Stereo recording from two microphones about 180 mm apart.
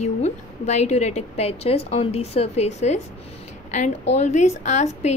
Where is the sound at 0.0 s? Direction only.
40° left (ahead or behind).